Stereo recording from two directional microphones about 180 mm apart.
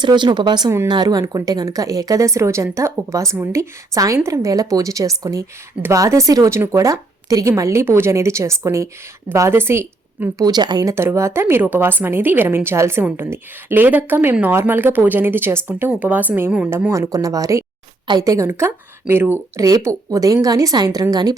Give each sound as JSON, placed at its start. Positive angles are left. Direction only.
{"t": 0.0, "sound": "speech", "side_deg": -25}